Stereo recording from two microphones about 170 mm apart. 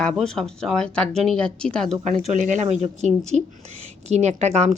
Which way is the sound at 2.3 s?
45° right (ahead or behind).